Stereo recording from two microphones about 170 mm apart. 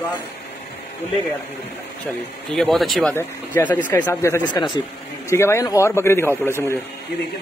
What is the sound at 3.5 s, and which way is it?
A man's voice, 15° left (ahead or behind).